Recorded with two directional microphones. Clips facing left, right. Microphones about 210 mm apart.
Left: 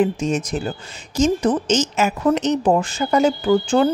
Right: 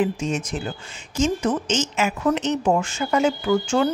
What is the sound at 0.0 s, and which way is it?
Speech, 40° left (ahead or behind).